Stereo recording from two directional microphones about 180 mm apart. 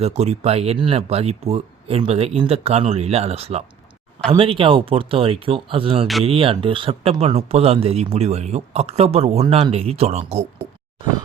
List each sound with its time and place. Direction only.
0.0 s speech: 35° right (ahead or behind)